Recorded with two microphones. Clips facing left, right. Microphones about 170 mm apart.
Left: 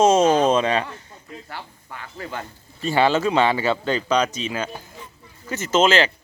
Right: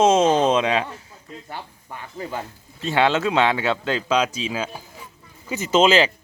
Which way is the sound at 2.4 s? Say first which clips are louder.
Left 1 dB; centre (ahead or behind).